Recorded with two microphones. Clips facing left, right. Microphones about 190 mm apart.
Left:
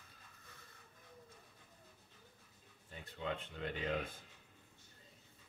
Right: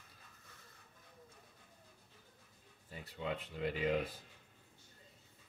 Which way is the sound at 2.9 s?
5° right (ahead or behind).